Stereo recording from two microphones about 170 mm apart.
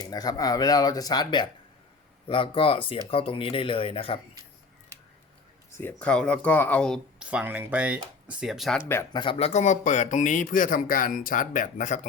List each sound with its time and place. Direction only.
0.0 s speech: 20° left (ahead or behind)
5.7 s speech: 10° left (ahead or behind)
7.3 s speech: 10° right (ahead or behind)
9.1 s speech: 30° left (ahead or behind); by 11.9 s 50° left (ahead or behind)